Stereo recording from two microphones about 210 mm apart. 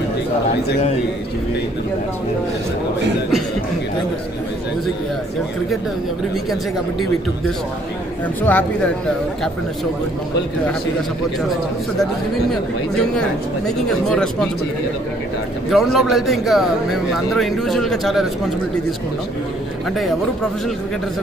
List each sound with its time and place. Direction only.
8.4 s speech: 10° left (ahead or behind)
13.7 s speech: centre (ahead or behind)
15.7 s speech: centre (ahead or behind)